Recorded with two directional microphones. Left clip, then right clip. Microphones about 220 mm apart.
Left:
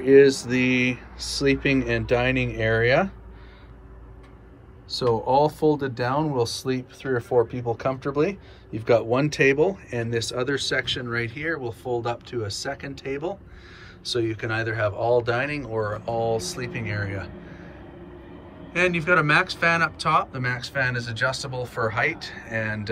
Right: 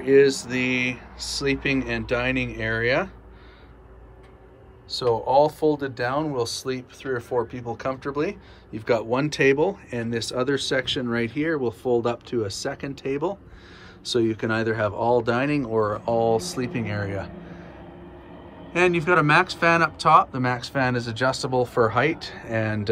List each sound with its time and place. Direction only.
0.0 s speech: centre (ahead or behind)
4.9 s speech: centre (ahead or behind)
18.7 s speech: 10° right (ahead or behind)